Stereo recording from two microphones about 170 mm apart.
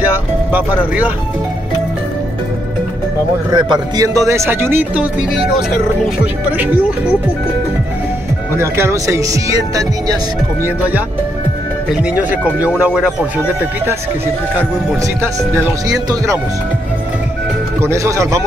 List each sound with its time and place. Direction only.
0.0 s speech: 10° right (ahead or behind)
3.5 s speech: 25° right (ahead or behind); by 5.4 s 10° right (ahead or behind)
6.5 s speech: 10° right (ahead or behind)
8.5 s speech: 15° right (ahead or behind)
11.9 s speech: 5° right (ahead or behind)
15.9 s speech: 20° right (ahead or behind)
17.8 s speech: 15° right (ahead or behind)